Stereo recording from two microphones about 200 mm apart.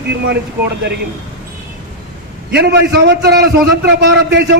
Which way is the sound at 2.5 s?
55° right (ahead or behind).